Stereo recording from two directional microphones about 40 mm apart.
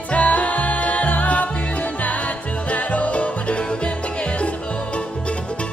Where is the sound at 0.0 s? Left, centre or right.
Left.